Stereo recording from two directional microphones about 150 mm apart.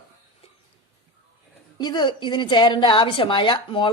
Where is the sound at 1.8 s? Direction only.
30° left (ahead or behind).